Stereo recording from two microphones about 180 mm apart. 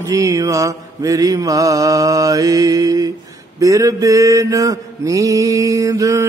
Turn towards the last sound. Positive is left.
turn(degrees=-20)  # may be behind; listen again after turning